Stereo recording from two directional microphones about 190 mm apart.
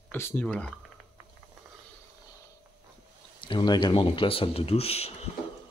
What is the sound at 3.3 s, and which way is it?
Speech, 25° left (ahead or behind).